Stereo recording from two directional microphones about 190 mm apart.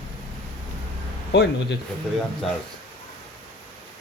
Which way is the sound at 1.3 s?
60° left (ahead or behind).